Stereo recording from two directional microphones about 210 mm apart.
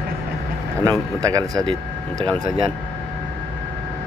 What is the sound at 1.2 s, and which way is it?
Speech, 15° right (ahead or behind).